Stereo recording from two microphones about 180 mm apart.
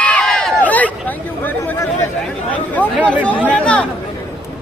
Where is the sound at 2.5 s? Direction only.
10° left (ahead or behind).